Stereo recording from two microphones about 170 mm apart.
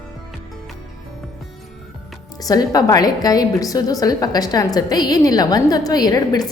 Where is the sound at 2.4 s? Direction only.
20° left (ahead or behind).